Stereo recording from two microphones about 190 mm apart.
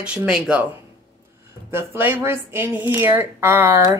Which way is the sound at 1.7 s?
10° right (ahead or behind).